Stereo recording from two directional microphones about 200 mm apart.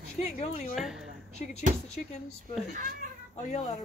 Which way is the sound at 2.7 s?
45° right (ahead or behind).